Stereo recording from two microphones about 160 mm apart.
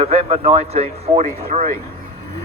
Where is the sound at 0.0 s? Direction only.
40° right (ahead or behind).